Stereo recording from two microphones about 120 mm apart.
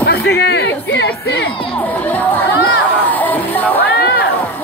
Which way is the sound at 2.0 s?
15° left (ahead or behind).